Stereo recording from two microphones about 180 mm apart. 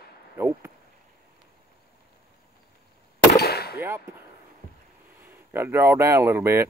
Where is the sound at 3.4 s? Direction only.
60° left (ahead or behind).